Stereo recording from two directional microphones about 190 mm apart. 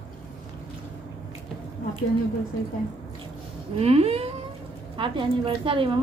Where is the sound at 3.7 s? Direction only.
30° right (ahead or behind).